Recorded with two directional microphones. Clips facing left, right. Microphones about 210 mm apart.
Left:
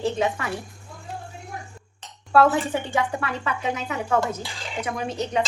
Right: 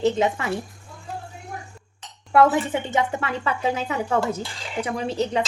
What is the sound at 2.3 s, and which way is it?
A woman's voice, 20° right (ahead or behind).